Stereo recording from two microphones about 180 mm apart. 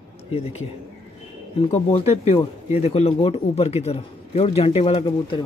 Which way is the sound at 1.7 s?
35° left (ahead or behind).